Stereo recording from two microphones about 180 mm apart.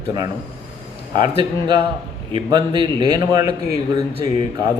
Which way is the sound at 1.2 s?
25° right (ahead or behind).